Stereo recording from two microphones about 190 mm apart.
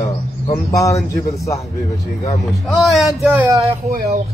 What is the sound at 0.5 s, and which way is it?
Speech, 15° left (ahead or behind).